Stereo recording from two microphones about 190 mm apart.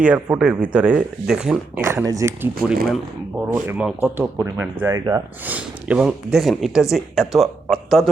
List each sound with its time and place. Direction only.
0.0 s speech: 10° right (ahead or behind)
1.8 s speech: 15° right (ahead or behind); by 8.1 s centre (ahead or behind)